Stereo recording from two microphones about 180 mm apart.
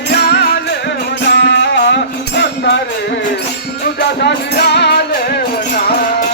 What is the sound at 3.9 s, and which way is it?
Music, 70° left (ahead or behind).